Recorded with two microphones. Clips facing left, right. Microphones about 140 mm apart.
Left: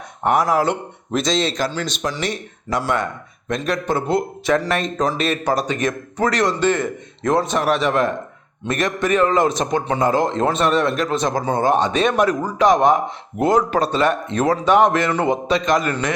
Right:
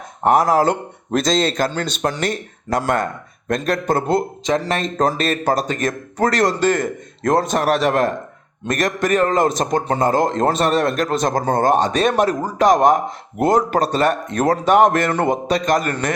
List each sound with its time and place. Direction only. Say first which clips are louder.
0.2 s a man's voice: right 3 dB; 40° right (ahead or behind)
4.4 s speech: left 1 dB; 25° right (ahead or behind)
4.9 s a man's voice: right 2 dB; 40° right (ahead or behind)